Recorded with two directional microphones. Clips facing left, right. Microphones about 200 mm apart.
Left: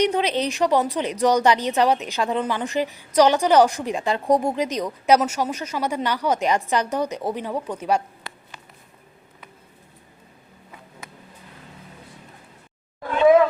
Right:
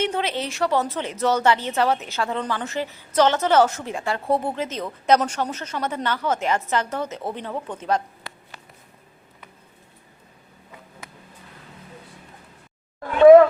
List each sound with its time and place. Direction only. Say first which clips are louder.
0.0 s speech: left 4 dB; 15° left (ahead or behind)